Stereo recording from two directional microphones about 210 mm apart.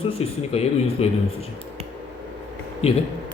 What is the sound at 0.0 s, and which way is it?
Speech, 30° left (ahead or behind).